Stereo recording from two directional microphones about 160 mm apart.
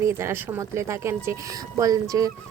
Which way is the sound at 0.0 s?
15° right (ahead or behind).